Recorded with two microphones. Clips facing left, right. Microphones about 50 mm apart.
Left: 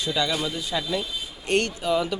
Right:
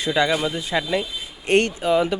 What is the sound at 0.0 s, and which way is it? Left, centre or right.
Speech, right.